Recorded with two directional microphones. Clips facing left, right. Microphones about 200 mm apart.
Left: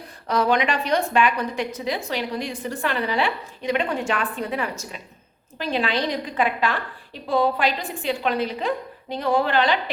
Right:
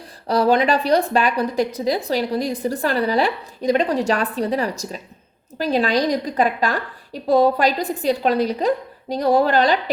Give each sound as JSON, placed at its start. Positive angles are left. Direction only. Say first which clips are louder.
{"t": 0.3, "sound": "a woman's voice", "louder": "right 5 dB", "side_deg": -35}